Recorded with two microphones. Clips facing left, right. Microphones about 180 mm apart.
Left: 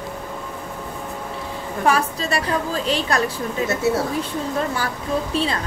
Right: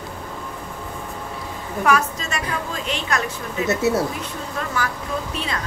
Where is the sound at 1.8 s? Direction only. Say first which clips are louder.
Even; 30° left (ahead or behind).